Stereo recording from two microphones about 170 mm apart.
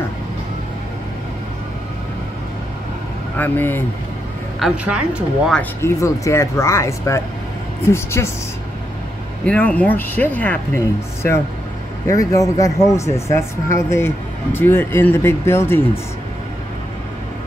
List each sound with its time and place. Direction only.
3.3 s speech: 10° left (ahead or behind)
4.6 s a woman's voice: 5° right (ahead or behind)
5.5 s speech: 10° left (ahead or behind)
9.5 s speech: 10° left (ahead or behind)